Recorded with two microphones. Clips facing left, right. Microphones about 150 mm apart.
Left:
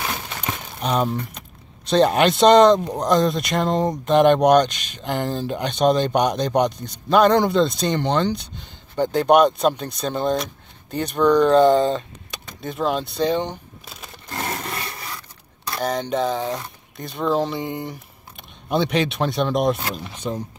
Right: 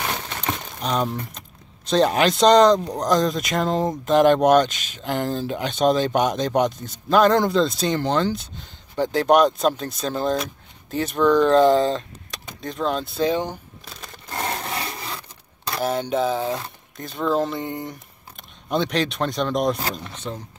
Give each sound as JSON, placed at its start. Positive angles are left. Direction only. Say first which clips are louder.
{"t": 0.7, "sound": "speech", "louder": "left 3 dB", "side_deg": 5}
{"t": 14.7, "sound": "wood", "louder": "right 2 dB", "side_deg": -25}
{"t": 15.8, "sound": "speech", "louder": "even", "side_deg": -5}